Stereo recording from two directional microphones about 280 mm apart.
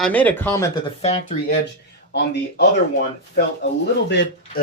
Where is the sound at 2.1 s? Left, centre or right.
Left.